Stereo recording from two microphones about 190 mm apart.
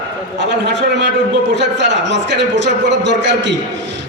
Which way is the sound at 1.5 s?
70° right (ahead or behind).